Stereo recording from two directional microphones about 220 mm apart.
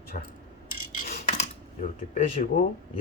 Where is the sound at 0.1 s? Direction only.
40° left (ahead or behind).